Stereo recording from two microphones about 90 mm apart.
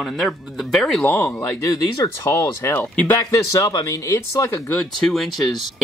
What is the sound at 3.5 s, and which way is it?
Speech, 40° left (ahead or behind).